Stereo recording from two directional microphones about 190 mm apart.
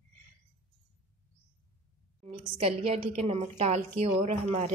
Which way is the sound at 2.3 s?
30° right (ahead or behind).